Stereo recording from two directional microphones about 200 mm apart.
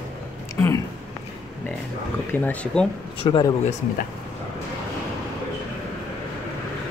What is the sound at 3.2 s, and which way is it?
Speech, 20° left (ahead or behind).